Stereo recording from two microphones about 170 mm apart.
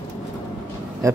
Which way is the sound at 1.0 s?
20° right (ahead or behind).